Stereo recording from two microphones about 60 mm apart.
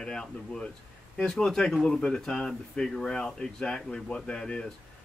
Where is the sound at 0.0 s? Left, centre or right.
Centre.